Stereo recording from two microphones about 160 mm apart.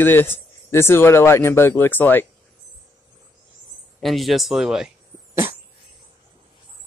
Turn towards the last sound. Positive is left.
turn(degrees=-15)  # may be behind; listen again after turning